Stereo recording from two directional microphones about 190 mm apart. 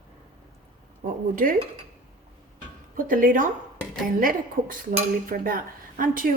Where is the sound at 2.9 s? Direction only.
45° right (ahead or behind).